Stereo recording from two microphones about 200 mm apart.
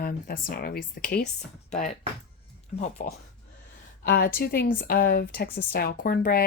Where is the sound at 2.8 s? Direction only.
40° left (ahead or behind).